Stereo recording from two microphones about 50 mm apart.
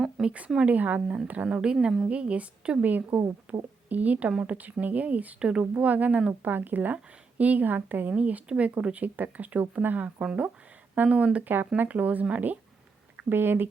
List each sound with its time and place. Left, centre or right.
0.2 s a woman's voice: right
1.5 s speech: centre
2.8 s a woman's voice: right
4.3 s speech: right
4.8 s speech: right
6.4 s a woman's voice: right
8.1 s a woman's voice: right
10.2 s speech: right
11.4 s a woman's voice: right
13.3 s speech: right